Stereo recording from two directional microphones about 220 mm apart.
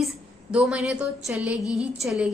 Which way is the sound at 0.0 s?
5° right (ahead or behind).